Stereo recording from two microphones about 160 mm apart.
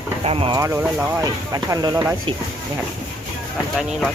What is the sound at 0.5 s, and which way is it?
Speech, 15° right (ahead or behind).